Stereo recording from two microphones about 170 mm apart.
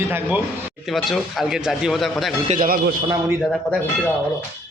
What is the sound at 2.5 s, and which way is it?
Speech, 55° right (ahead or behind).